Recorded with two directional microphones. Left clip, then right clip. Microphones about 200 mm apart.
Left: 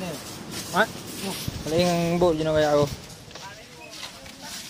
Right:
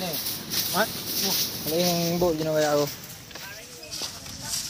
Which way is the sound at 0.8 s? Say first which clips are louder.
Left 5 dB; 15° left (ahead or behind).